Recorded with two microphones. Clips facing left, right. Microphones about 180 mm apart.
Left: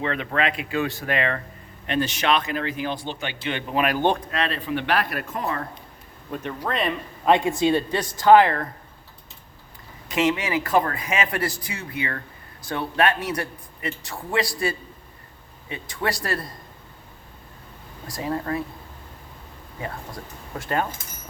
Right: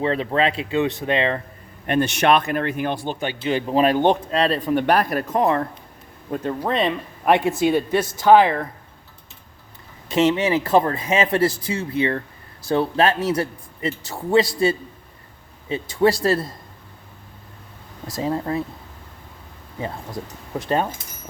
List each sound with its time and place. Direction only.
0.0 s speech: 30° right (ahead or behind)
1.9 s a man's voice: 55° right (ahead or behind)
3.4 s speech: 30° right (ahead or behind)
4.0 s speech: 20° right (ahead or behind)
4.4 s speech: 35° right (ahead or behind)
6.3 s speech: 30° right (ahead or behind)
7.5 s speech: 10° right (ahead or behind)
10.1 s speech: 30° right (ahead or behind)
18.1 s speech: 25° right (ahead or behind)
20.6 s speech: 20° right (ahead or behind)